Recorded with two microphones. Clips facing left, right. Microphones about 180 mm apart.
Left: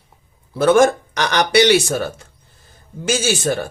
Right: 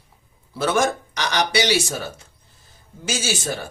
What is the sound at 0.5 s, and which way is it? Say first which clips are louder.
Speech: left 8 dB; 50° left (ahead or behind).